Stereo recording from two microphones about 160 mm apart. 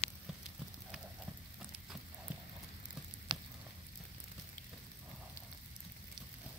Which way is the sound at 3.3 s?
30° right (ahead or behind).